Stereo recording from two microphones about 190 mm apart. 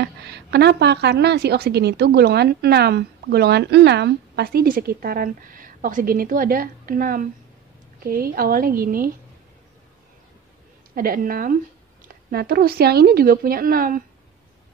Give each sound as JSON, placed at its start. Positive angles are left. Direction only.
{"t": 0.0, "sound": "a woman's voice", "side_deg": -60}
{"t": 11.0, "sound": "speech", "side_deg": -50}